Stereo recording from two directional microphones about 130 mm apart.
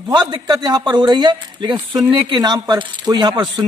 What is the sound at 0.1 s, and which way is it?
Speech, 30° right (ahead or behind).